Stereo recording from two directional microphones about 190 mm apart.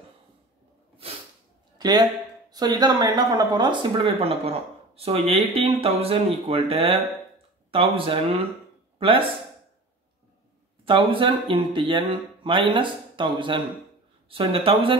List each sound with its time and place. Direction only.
1.8 s speech: 20° right (ahead or behind)
10.9 s speech: 25° right (ahead or behind)